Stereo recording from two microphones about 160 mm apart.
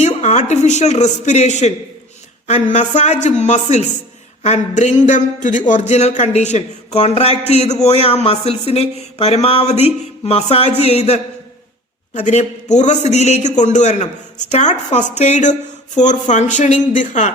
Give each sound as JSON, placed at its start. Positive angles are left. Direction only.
{"t": 0.0, "sound": "a man's voice", "side_deg": 45}